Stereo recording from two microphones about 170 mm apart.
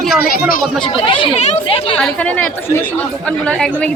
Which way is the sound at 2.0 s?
10° left (ahead or behind).